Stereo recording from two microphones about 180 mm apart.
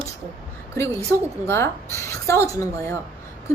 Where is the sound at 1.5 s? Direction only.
15° left (ahead or behind).